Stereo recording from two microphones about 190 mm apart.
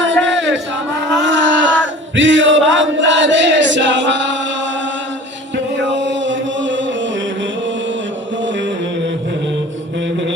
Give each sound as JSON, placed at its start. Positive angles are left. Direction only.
{"t": 1.2, "sound": "male singing", "side_deg": -75}
{"t": 5.7, "sound": "chant", "side_deg": -70}